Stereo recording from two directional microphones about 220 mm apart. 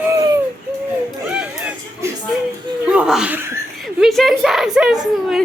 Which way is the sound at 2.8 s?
5° right (ahead or behind).